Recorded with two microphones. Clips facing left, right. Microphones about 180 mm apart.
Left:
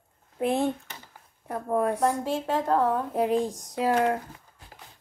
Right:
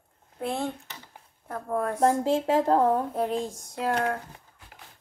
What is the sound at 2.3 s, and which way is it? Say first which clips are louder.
Speech: right 3 dB; 25° right (ahead or behind).